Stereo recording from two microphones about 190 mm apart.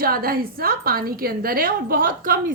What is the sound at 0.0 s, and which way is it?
A woman's voice, 50° right (ahead or behind).